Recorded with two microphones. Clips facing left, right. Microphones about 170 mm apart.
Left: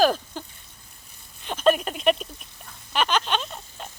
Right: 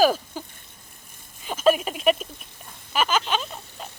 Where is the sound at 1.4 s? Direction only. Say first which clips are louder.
Right 1 dB; 5° right (ahead or behind).